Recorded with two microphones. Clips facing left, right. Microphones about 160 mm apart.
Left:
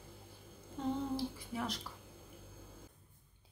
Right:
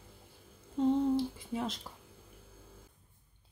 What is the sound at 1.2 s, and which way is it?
Speech, 25° right (ahead or behind).